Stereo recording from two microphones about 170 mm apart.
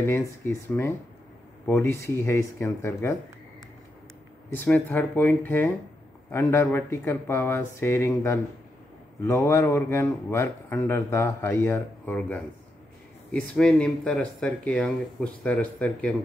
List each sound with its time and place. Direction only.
0.0 s speech: 15° left (ahead or behind)
4.5 s speech: 10° left (ahead or behind)
13.6 s speech: 5° left (ahead or behind)